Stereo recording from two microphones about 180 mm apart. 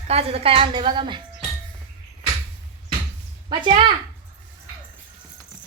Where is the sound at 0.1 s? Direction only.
35° right (ahead or behind).